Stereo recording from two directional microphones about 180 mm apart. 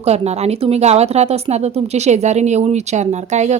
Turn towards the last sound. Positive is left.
turn(degrees=-40)  # may be behind; listen again after turning